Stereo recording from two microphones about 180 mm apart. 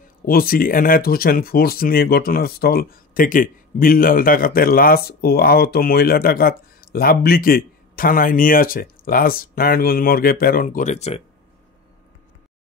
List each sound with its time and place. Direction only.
0.2 s speech: 55° left (ahead or behind); by 11.2 s 35° left (ahead or behind)